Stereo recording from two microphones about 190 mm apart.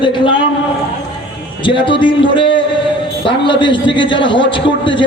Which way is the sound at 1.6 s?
25° left (ahead or behind).